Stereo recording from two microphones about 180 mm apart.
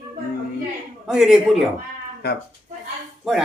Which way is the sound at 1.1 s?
Centre (ahead or behind).